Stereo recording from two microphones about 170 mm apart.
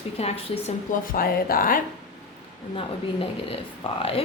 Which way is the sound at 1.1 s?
60° left (ahead or behind).